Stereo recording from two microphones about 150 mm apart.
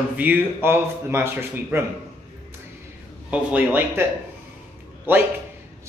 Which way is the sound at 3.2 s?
10° right (ahead or behind).